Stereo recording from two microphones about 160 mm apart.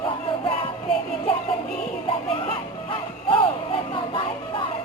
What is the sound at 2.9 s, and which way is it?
Music, 30° left (ahead or behind).